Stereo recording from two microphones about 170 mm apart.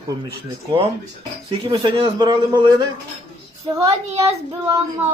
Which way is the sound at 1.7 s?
30° right (ahead or behind).